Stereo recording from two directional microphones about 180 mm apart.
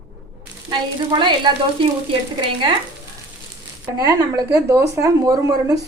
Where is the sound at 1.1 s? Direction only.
25° right (ahead or behind).